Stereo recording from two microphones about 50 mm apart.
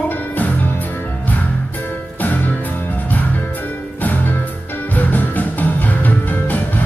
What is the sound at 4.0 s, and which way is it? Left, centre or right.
Music, left.